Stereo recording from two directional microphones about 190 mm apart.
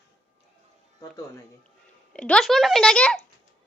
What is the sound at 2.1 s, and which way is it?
A woman's voice, 5° left (ahead or behind).